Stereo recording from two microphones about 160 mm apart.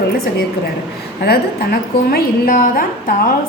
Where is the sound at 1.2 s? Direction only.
75° left (ahead or behind).